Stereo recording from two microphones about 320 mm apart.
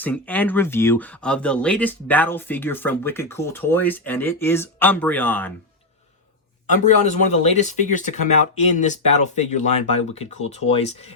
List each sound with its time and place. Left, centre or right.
0.0 s speech: centre
6.7 s speech: left